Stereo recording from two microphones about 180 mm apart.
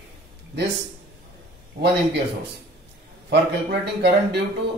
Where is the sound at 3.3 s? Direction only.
65° right (ahead or behind).